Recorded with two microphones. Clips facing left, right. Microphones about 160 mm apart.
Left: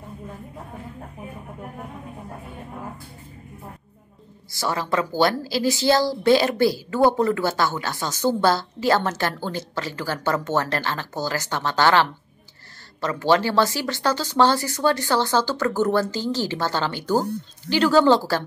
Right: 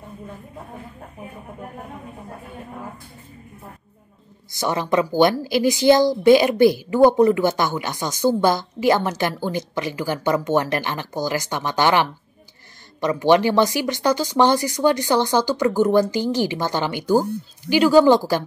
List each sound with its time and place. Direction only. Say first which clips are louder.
4.5 s a woman's voice: right 3 dB; 20° right (ahead or behind)